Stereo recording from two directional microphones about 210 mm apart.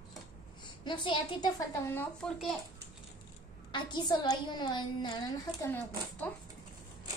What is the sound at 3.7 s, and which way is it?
A woman's voice, 20° left (ahead or behind).